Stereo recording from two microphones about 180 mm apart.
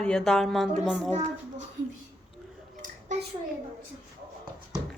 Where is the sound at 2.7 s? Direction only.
45° right (ahead or behind).